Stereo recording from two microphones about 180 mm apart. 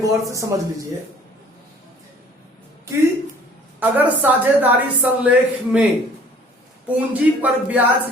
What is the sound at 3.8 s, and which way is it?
A woman's voice, 10° right (ahead or behind).